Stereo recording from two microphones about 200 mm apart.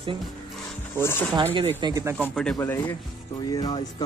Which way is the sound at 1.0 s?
10° left (ahead or behind).